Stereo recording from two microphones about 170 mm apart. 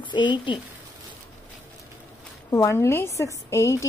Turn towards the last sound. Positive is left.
turn(degrees=15)  # may be behind; listen again after turning